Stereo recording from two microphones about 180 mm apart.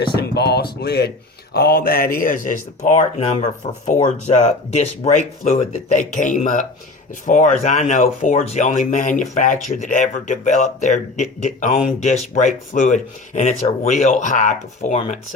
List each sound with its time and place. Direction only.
0.2 s speech: 65° left (ahead or behind); by 15.2 s 40° left (ahead or behind)